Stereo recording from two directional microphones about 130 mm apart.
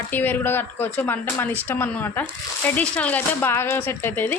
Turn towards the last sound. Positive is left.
turn(degrees=15)  # may be behind; listen again after turning